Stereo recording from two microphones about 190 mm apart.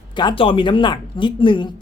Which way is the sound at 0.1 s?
25° left (ahead or behind).